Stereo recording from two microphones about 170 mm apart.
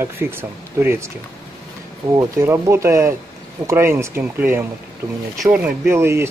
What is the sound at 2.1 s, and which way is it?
Speech, 15° right (ahead or behind).